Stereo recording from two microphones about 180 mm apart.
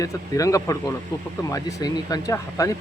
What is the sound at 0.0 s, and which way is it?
Speech, 20° left (ahead or behind).